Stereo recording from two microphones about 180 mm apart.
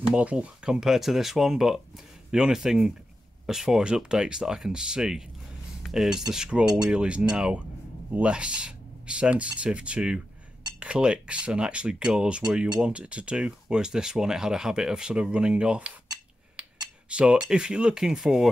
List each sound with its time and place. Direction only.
0.0 s speech: 5° right (ahead or behind)